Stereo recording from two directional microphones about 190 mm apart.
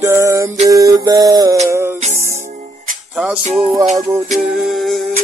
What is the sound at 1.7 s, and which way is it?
Music, 15° right (ahead or behind).